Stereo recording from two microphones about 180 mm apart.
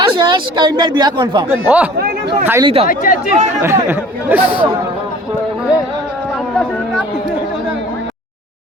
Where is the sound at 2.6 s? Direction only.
35° right (ahead or behind).